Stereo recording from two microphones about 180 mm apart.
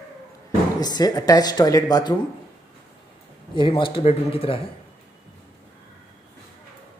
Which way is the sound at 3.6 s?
30° left (ahead or behind).